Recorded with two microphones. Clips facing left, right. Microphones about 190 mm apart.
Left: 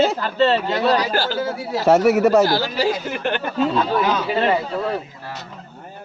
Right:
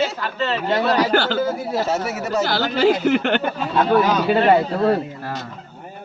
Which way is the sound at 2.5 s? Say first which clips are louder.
Right 3 dB; 65° right (ahead or behind).